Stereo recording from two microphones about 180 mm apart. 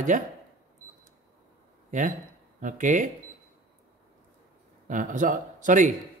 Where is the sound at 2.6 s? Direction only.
45° right (ahead or behind).